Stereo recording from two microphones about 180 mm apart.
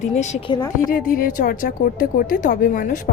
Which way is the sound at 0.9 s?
50° left (ahead or behind).